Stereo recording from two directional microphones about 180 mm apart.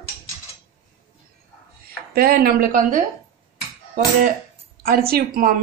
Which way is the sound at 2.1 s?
55° right (ahead or behind).